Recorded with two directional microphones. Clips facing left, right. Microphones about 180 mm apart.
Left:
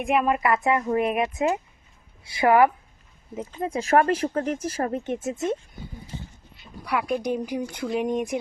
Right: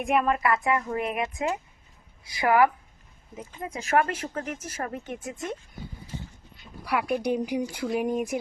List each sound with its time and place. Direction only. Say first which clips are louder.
0.0 s speech: left 2 dB; centre (ahead or behind)
0.3 s speech: left 2 dB; 20° left (ahead or behind)
6.8 s speech: left 1 dB; centre (ahead or behind)